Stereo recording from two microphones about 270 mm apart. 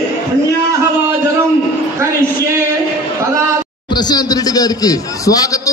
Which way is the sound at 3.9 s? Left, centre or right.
Centre.